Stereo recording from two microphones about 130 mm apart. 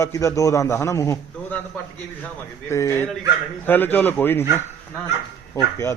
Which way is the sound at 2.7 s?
20° left (ahead or behind).